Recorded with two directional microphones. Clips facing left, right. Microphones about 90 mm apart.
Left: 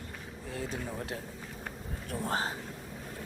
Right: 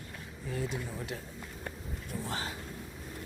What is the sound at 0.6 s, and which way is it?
Speech, 35° left (ahead or behind).